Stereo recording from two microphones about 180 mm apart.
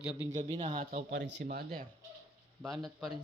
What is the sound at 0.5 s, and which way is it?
Speech, 25° right (ahead or behind).